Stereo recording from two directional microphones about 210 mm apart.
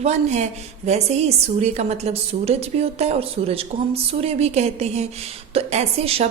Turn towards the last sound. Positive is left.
turn(degrees=-30)  # may be behind; listen again after turning